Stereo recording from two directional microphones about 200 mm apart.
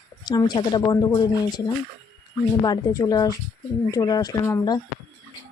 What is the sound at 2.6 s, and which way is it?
Speech, 20° left (ahead or behind).